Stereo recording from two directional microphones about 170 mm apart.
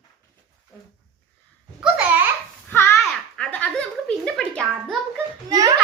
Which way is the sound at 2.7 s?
15° left (ahead or behind).